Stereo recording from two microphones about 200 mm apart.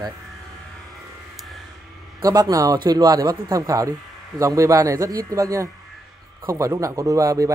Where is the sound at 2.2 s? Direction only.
20° right (ahead or behind).